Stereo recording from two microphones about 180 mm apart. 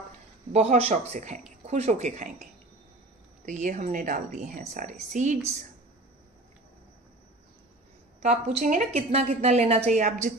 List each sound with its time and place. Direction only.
0.5 s a woman's voice: 40° right (ahead or behind)
3.4 s a woman's voice: 45° right (ahead or behind)
8.3 s a woman's voice: 45° right (ahead or behind)